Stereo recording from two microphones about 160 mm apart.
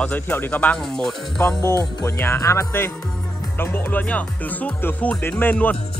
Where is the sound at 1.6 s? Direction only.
15° left (ahead or behind).